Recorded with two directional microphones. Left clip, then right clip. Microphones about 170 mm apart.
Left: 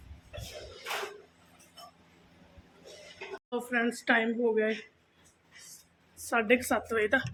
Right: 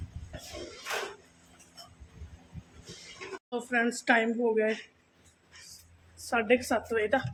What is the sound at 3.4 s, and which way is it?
Speech, centre (ahead or behind).